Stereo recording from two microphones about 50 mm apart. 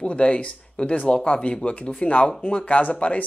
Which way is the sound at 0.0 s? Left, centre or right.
Left.